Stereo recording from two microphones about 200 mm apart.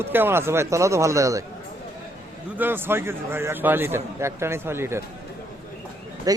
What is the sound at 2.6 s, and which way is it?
A man's voice, 10° right (ahead or behind).